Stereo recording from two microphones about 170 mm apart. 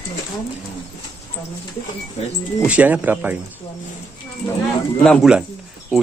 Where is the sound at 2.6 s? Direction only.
10° right (ahead or behind).